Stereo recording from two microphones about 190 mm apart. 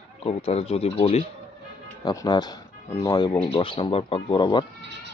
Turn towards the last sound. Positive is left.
turn(degrees=25)  # may be behind; listen again after turning